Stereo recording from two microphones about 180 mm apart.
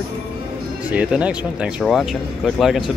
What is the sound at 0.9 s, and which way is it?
Speech, 5° right (ahead or behind).